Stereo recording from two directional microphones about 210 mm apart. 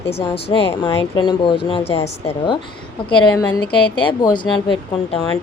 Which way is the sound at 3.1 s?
20° left (ahead or behind).